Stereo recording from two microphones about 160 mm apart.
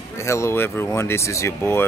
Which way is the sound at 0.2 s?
20° left (ahead or behind).